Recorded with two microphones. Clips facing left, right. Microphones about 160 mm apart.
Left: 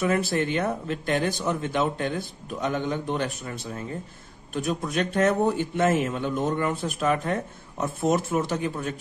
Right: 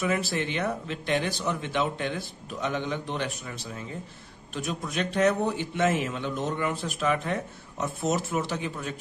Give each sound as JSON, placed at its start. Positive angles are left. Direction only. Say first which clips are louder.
{"t": 0.0, "sound": "a man's voice", "louder": "left 4 dB", "side_deg": 55}